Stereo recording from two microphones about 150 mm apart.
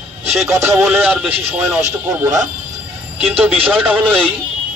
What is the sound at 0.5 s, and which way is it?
Speech, 20° right (ahead or behind).